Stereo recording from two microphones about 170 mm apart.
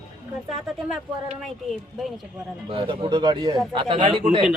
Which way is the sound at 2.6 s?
30° right (ahead or behind).